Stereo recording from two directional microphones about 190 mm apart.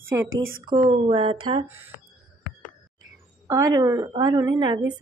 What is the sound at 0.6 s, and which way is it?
Speech, 25° right (ahead or behind).